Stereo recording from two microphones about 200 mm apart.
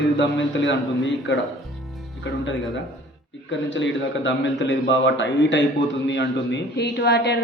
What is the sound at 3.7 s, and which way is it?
A woman's voice, 65° left (ahead or behind).